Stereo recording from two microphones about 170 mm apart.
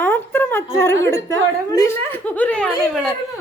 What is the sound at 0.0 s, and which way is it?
A woman's voice, 15° left (ahead or behind).